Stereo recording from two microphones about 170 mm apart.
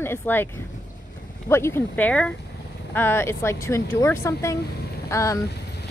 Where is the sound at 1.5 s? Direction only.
10° left (ahead or behind).